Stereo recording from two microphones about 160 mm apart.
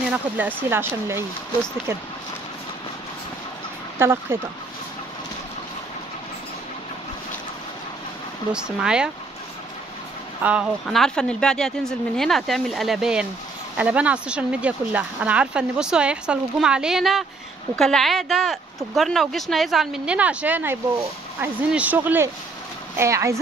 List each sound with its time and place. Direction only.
0.1 s speech: 10° right (ahead or behind)
4.0 s speech: 15° right (ahead or behind)
8.5 s speech: 5° right (ahead or behind)
10.4 s speech: 5° right (ahead or behind)